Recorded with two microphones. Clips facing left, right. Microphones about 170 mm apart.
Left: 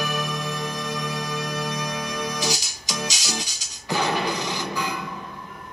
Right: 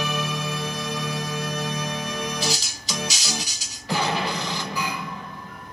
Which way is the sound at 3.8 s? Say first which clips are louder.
Left 1 dB; 15° left (ahead or behind).